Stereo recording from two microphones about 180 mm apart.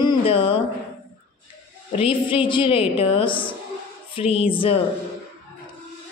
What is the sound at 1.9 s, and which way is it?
A woman's voice, 30° left (ahead or behind).